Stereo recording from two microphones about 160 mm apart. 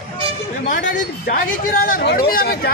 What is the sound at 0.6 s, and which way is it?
Speech, 50° left (ahead or behind).